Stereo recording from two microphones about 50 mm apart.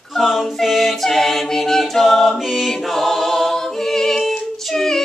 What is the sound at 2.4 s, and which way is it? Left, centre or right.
Music, centre.